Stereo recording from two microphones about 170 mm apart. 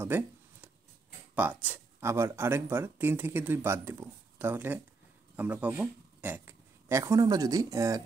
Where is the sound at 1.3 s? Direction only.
10° right (ahead or behind).